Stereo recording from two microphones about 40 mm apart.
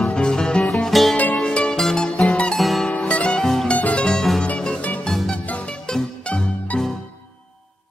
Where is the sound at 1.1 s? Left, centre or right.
Left.